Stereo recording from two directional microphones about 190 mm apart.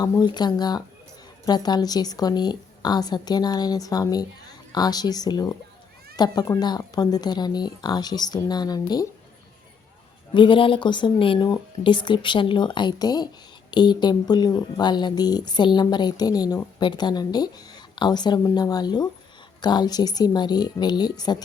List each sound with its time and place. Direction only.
0.0 s speech: 20° left (ahead or behind)
10.3 s speech: 25° left (ahead or behind)